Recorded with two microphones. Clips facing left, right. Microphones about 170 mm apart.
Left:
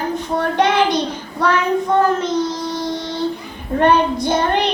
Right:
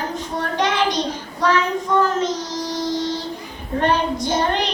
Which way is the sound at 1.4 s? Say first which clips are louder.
Left 2 dB; 60° left (ahead or behind).